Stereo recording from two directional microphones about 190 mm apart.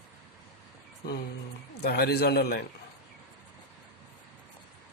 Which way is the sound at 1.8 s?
60° left (ahead or behind).